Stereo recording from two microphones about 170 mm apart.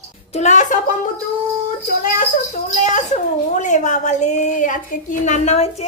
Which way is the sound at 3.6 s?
45° left (ahead or behind).